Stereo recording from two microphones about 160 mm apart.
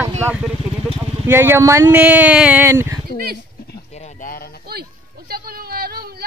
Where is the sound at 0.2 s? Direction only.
10° right (ahead or behind).